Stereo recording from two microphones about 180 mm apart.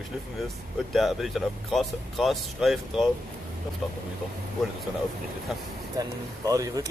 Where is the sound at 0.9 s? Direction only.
Centre (ahead or behind).